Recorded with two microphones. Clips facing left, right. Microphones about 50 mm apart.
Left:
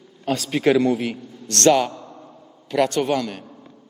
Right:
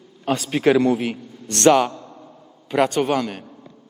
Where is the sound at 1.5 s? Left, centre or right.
Centre.